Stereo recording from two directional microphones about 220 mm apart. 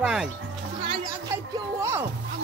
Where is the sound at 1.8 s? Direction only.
10° right (ahead or behind).